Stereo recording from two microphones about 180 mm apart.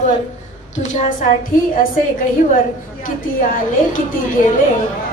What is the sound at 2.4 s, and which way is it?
A woman's voice, 45° left (ahead or behind).